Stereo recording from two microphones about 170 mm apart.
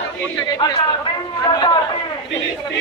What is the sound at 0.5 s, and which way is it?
Speech, 25° left (ahead or behind).